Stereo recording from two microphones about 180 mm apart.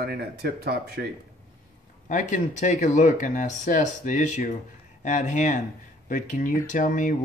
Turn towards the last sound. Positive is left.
turn(degrees=45)  # may be behind; listen again after turning